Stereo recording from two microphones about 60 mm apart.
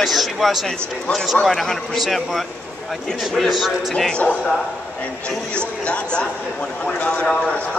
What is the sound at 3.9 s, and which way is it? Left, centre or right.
Speech, centre.